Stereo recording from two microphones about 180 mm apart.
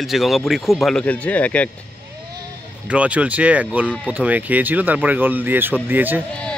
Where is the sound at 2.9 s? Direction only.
5° right (ahead or behind).